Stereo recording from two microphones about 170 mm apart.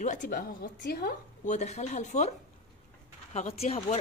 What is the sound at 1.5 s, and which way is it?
Speech, 40° left (ahead or behind).